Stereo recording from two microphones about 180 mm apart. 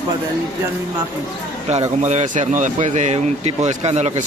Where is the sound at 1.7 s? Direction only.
40° right (ahead or behind).